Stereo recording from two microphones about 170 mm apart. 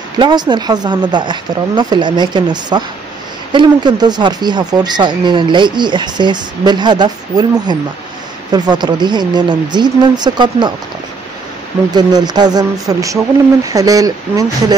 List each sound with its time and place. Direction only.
0.2 s speech: 25° right (ahead or behind)
11.9 s speech: 25° right (ahead or behind)